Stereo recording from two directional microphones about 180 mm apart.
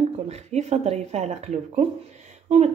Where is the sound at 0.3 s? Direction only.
40° right (ahead or behind).